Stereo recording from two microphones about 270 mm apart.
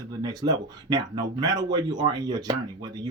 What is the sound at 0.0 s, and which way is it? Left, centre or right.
Speech, centre.